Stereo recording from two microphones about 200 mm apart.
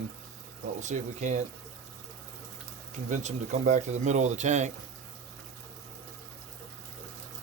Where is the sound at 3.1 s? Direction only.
40° right (ahead or behind).